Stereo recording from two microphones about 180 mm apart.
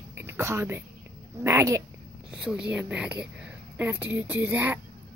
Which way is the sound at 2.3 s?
5° right (ahead or behind).